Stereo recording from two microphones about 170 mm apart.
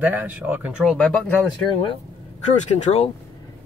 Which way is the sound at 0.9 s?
5° left (ahead or behind).